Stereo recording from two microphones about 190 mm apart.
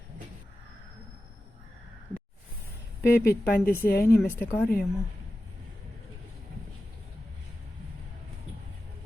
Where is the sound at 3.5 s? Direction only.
55° left (ahead or behind).